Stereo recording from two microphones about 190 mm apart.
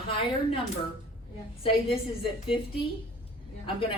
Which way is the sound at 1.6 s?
30° left (ahead or behind).